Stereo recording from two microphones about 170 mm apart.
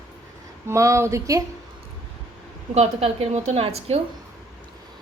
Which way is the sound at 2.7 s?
40° right (ahead or behind).